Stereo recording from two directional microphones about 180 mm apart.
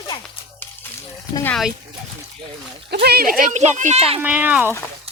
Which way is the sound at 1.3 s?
10° left (ahead or behind).